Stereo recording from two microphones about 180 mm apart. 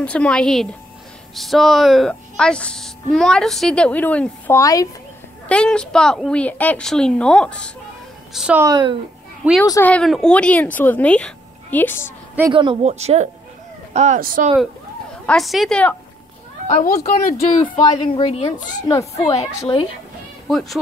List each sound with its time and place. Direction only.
0.0 s speech: 5° left (ahead or behind)
5.5 s speech: 5° left (ahead or behind)
8.3 s a woman's voice: 5° right (ahead or behind)
8.6 s speech: 25° right (ahead or behind)
9.7 s speech: 10° left (ahead or behind)
12.5 s speech: 30° right (ahead or behind)
14.2 s speech: 50° right (ahead or behind)
15.2 s speech: centre (ahead or behind)
16.8 s speech: 45° left (ahead or behind)
17.6 s a woman's voice: 25° left (ahead or behind); by 18.9 s 45° left (ahead or behind)
18.9 s a woman's voice: 20° left (ahead or behind)
20.4 s speech: centre (ahead or behind)